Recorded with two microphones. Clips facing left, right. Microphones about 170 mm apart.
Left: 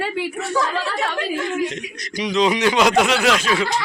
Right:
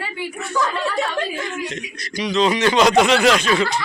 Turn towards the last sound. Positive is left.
turn(degrees=5)  # may be behind; listen again after turning